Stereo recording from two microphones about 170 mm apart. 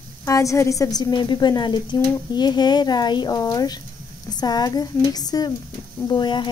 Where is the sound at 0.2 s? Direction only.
20° left (ahead or behind).